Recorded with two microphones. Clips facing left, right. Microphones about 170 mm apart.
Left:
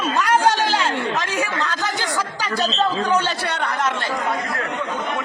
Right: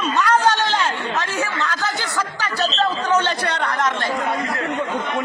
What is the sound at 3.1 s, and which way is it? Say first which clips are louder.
Chatter: right 1 dB; 10° left (ahead or behind).